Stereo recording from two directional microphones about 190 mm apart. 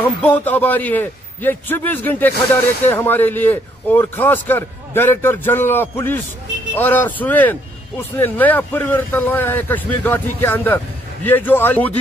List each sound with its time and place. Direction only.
0.0 s a man's voice: 10° left (ahead or behind)